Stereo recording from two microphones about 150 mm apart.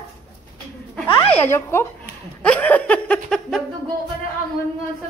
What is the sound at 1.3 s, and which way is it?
Laughter, 15° left (ahead or behind).